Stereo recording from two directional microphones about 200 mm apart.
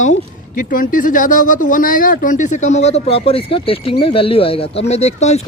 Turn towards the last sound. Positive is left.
turn(degrees=35)  # may be behind; listen again after turning